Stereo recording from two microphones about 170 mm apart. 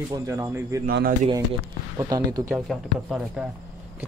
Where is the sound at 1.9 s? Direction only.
20° right (ahead or behind).